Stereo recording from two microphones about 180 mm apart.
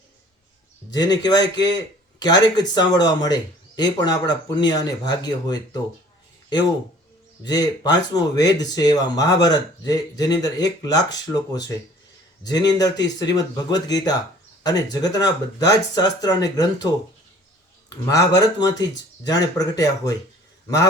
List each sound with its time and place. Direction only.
0.8 s a sound: 5° left (ahead or behind)
1.2 s speech: 20° left (ahead or behind)
7.4 s speech: 20° left (ahead or behind)